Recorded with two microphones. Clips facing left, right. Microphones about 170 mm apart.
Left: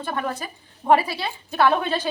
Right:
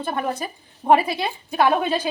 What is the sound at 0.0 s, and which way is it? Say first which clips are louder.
A woman's voice: right 2 dB; 20° right (ahead or behind).